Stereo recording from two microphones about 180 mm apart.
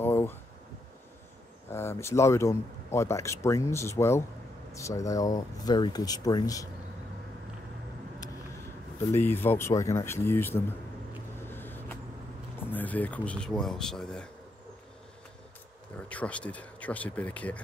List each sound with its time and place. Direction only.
0.0 s a sound: 10° left (ahead or behind)
1.7 s speech: 15° left (ahead or behind)
9.1 s speech: 10° left (ahead or behind)
11.3 s vehicle: 10° left (ahead or behind)
12.5 s speech: 10° left (ahead or behind)
16.1 s speech: 5° left (ahead or behind)